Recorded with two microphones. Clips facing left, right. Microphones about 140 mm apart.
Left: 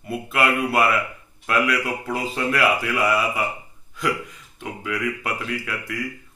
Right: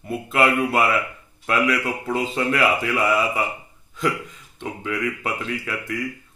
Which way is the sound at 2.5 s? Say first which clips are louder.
Even; 15° right (ahead or behind).